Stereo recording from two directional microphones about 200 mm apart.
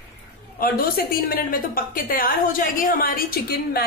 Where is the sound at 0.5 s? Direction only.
45° left (ahead or behind).